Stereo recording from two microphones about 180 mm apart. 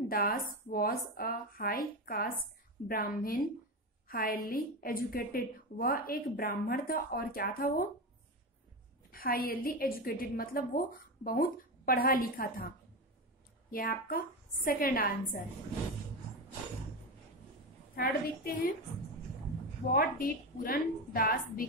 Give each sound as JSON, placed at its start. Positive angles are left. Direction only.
{"t": 0.1, "sound": "a woman's voice", "side_deg": 55}
{"t": 9.1, "sound": "a woman's voice", "side_deg": 55}
{"t": 17.9, "sound": "a woman's voice", "side_deg": 55}
{"t": 19.9, "sound": "a woman's voice", "side_deg": 50}